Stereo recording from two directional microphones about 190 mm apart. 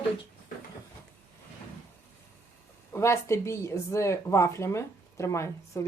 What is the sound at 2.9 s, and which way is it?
Speech, 15° left (ahead or behind).